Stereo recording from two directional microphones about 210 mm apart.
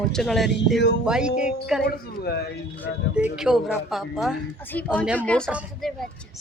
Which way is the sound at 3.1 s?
5° right (ahead or behind).